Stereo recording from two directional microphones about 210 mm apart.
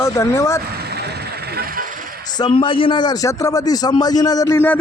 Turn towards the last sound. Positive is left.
turn(degrees=15)  # may be behind; listen again after turning